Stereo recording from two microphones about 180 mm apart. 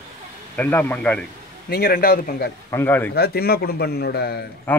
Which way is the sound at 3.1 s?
60° left (ahead or behind).